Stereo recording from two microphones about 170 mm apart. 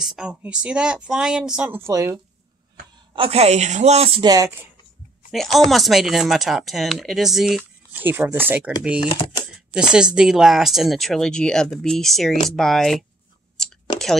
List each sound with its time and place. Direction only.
0.0 s speech: 5° right (ahead or behind)
3.1 s a man's voice: 35° right (ahead or behind)
5.3 s speech: centre (ahead or behind)
9.1 s speech: 30° left (ahead or behind)
9.8 s speech: 5° right (ahead or behind)